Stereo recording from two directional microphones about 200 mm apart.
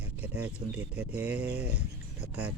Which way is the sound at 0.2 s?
5° right (ahead or behind).